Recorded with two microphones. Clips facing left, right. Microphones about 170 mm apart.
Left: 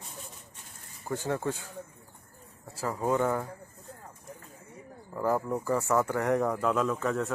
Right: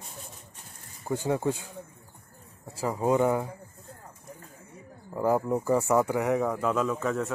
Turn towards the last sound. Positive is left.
turn(degrees=0)  # may be behind; listen again after turning